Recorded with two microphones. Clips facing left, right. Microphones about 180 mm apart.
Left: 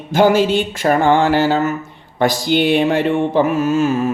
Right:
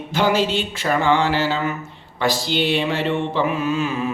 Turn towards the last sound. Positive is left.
turn(degrees=45)  # may be behind; listen again after turning